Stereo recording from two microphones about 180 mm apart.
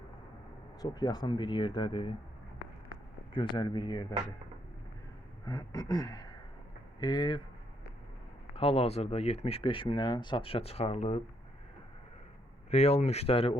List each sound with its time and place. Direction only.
0.8 s speech: 20° left (ahead or behind)
3.3 s speech: 25° left (ahead or behind)
5.5 s speech: 25° left (ahead or behind)
8.5 s speech: 30° left (ahead or behind)
12.7 s speech: 35° left (ahead or behind)